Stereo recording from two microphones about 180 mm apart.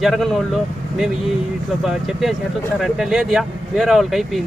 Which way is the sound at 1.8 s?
Centre (ahead or behind).